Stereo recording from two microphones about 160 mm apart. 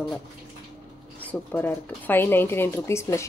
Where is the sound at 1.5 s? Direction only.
10° left (ahead or behind).